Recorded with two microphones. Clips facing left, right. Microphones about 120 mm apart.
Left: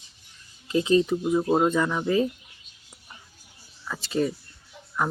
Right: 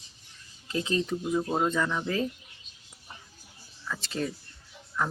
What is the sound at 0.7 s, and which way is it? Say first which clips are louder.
Speech: left 8 dB; 20° left (ahead or behind).